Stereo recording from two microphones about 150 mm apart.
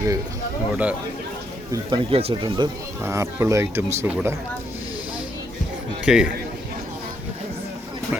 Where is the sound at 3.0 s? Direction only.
15° right (ahead or behind).